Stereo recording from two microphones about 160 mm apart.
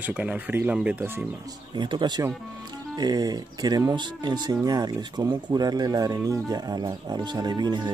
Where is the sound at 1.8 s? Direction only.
30° right (ahead or behind).